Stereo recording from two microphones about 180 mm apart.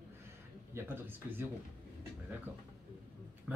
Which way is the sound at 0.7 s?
10° right (ahead or behind).